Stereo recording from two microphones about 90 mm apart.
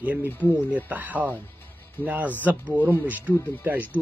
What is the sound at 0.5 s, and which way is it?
A man's voice, 15° right (ahead or behind).